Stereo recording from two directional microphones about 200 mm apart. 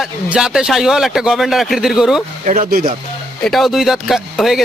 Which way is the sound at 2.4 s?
35° right (ahead or behind).